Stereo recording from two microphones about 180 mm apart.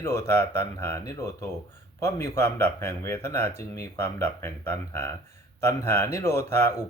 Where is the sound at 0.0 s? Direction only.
15° left (ahead or behind).